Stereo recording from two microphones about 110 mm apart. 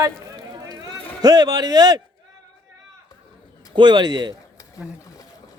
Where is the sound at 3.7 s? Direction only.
45° right (ahead or behind).